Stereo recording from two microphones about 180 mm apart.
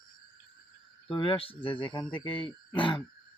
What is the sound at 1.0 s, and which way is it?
Speech, 30° left (ahead or behind).